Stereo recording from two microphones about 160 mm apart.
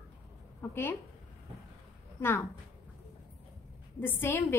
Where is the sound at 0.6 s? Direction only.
15° left (ahead or behind).